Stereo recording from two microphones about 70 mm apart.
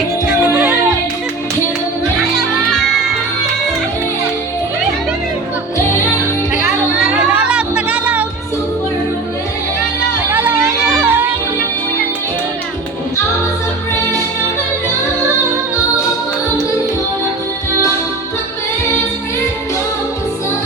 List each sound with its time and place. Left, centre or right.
7.3 s music: centre
10.2 s a sound: right
10.6 s music: right
11.1 s music: right